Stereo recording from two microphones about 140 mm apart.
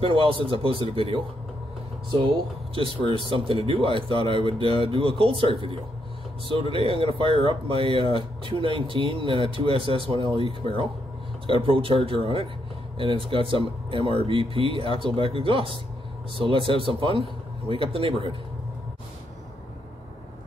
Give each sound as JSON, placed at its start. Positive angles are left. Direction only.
{"t": 0.0, "sound": "speech", "side_deg": -40}
{"t": 2.2, "sound": "speech", "side_deg": -40}
{"t": 6.5, "sound": "speech", "side_deg": -40}